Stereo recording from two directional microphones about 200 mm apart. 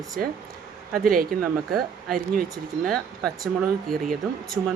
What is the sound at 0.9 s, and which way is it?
Speech, 45° right (ahead or behind).